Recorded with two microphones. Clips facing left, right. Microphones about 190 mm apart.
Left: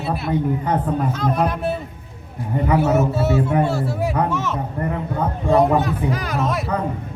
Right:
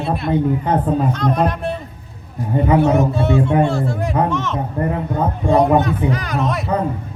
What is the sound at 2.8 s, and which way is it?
A man's voice, 5° left (ahead or behind).